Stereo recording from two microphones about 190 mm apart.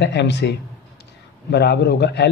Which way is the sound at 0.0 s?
65° left (ahead or behind).